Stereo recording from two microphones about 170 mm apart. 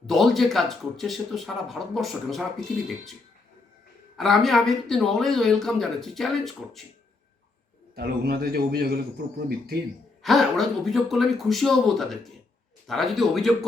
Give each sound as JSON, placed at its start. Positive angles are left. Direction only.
{"t": 0.1, "sound": "speech", "side_deg": 0}
{"t": 4.2, "sound": "speech", "side_deg": 0}
{"t": 7.9, "sound": "a man's voice", "side_deg": -65}
{"t": 10.2, "sound": "speech", "side_deg": 0}